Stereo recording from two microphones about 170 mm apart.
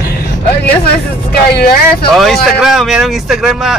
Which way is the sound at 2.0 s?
Centre (ahead or behind).